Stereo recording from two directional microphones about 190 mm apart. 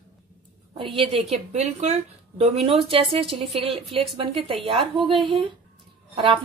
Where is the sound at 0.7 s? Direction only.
25° right (ahead or behind).